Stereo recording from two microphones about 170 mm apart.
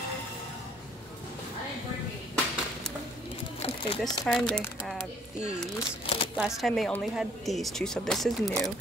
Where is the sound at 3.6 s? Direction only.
35° left (ahead or behind).